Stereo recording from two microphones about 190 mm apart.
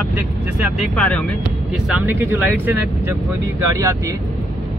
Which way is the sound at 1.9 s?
10° right (ahead or behind).